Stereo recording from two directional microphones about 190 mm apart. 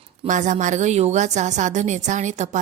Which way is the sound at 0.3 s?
40° right (ahead or behind).